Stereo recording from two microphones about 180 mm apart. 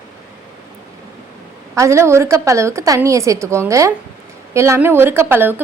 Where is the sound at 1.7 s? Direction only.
15° right (ahead or behind).